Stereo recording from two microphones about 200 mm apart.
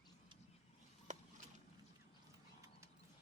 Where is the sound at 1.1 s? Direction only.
40° right (ahead or behind).